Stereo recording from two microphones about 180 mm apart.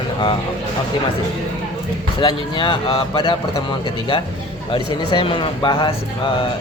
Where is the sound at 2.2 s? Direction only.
25° left (ahead or behind).